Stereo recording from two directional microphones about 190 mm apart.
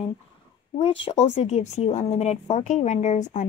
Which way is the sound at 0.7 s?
30° left (ahead or behind).